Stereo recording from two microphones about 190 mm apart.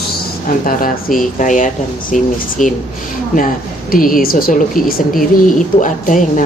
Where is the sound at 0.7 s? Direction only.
45° left (ahead or behind).